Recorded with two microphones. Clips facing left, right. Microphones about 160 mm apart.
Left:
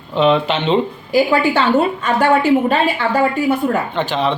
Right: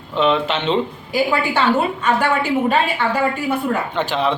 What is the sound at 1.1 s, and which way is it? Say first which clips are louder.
Speech: left 5 dB; 45° left (ahead or behind).